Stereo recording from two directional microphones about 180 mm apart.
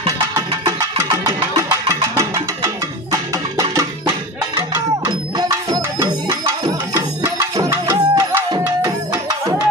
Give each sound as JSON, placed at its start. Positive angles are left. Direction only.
{"t": 0.7, "sound": "music", "side_deg": -20}
{"t": 7.2, "sound": "tabla", "side_deg": -20}